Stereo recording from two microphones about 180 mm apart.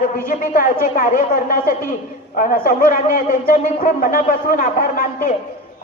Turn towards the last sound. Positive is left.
turn(degrees=50)  # may be behind; listen again after turning